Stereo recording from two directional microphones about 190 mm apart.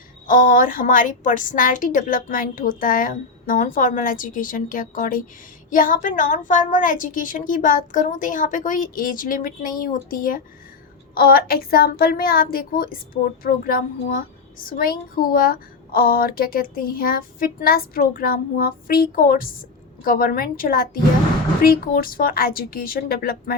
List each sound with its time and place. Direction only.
0.3 s a woman's voice: 45° left (ahead or behind)